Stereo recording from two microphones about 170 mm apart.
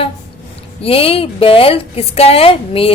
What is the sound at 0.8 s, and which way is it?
Speech, 35° left (ahead or behind).